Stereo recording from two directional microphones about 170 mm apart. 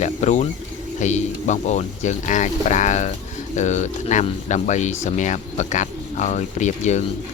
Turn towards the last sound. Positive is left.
turn(degrees=45)  # may be behind; listen again after turning